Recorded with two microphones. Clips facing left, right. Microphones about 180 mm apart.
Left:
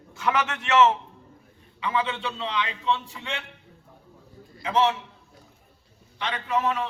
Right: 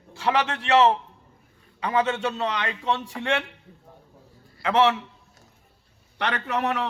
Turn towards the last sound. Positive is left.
turn(degrees=-70)  # may be behind; listen again after turning